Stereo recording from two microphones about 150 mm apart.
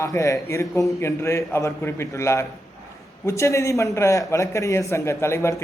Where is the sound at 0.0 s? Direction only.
20° left (ahead or behind).